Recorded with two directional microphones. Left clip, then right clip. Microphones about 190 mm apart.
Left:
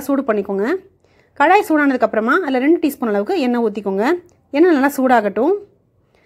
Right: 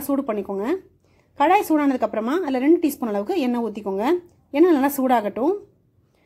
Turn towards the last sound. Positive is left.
turn(degrees=15)  # may be behind; listen again after turning